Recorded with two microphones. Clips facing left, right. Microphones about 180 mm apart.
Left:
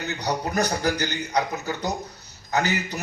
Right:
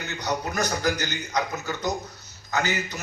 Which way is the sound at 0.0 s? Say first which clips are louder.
Left 2 dB; 35° left (ahead or behind).